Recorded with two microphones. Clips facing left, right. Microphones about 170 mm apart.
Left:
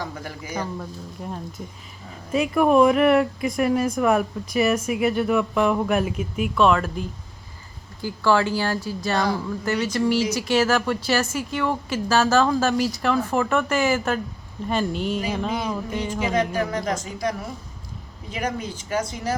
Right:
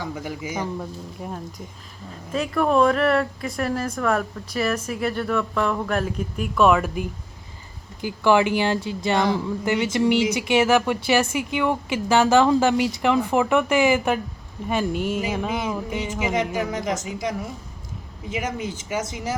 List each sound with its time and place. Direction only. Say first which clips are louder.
0.2 s speech: right 2 dB; 20° right (ahead or behind)
2.3 s speech: left 3 dB; 10° left (ahead or behind)
6.6 s speech: right 2 dB; 5° right (ahead or behind)